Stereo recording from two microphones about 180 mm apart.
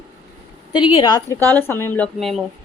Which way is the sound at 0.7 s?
30° left (ahead or behind).